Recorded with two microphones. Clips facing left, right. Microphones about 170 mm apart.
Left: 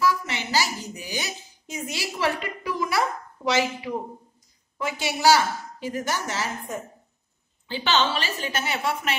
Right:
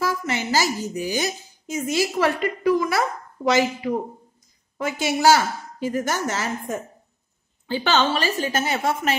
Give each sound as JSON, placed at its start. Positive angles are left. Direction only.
{"t": 0.0, "sound": "a woman's voice", "side_deg": -45}
{"t": 7.6, "sound": "a woman's voice", "side_deg": -45}